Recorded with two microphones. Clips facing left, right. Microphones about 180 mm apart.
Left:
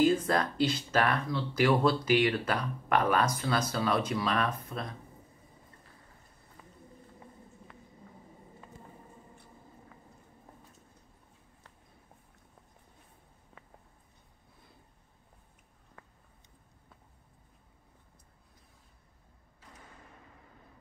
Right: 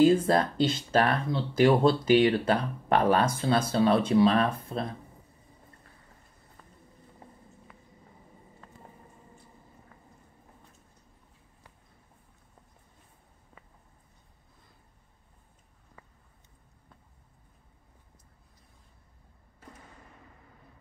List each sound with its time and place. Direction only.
0.0 s speech: 30° right (ahead or behind)